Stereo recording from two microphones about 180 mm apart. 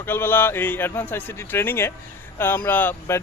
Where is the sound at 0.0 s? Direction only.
10° left (ahead or behind).